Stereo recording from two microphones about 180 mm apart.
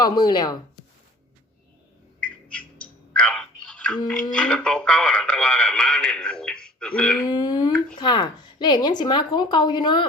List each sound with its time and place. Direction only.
0.0 s a woman's voice: 25° left (ahead or behind)
2.2 s music: 5° left (ahead or behind)
4.3 s speech: 5° left (ahead or behind)
7.3 s a woman's voice: 25° left (ahead or behind)